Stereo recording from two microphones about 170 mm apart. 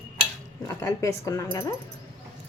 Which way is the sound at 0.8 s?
20° left (ahead or behind).